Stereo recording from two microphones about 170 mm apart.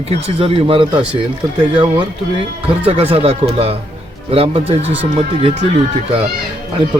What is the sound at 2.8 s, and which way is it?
Speech, 35° right (ahead or behind).